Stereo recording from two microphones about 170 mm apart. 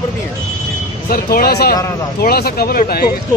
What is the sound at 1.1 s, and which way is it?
Speech, 60° left (ahead or behind).